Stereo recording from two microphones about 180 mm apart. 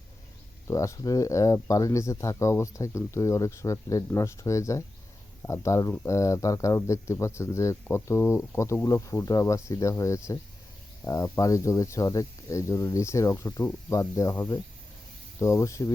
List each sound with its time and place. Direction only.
0.7 s speech: 15° left (ahead or behind)